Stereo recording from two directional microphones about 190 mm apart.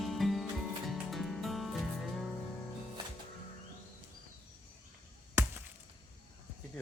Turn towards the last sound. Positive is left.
turn(degrees=-15)  # may be behind; listen again after turning